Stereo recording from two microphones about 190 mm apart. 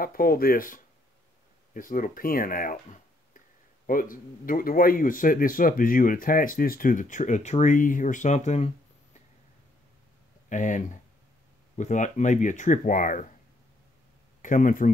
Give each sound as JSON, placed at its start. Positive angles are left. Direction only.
{"t": 0.0, "sound": "speech", "side_deg": 50}
{"t": 10.5, "sound": "speech", "side_deg": 40}
{"t": 14.4, "sound": "speech", "side_deg": 45}